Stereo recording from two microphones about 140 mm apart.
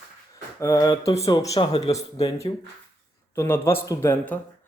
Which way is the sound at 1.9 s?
25° left (ahead or behind).